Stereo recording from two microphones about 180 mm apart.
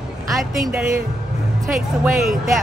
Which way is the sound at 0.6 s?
5° right (ahead or behind).